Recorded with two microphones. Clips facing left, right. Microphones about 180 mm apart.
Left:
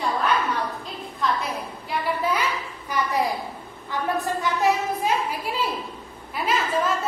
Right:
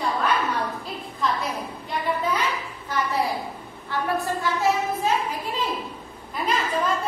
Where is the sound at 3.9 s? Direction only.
15° left (ahead or behind).